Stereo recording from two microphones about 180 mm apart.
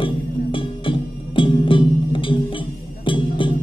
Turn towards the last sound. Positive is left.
turn(degrees=25)  # may be behind; listen again after turning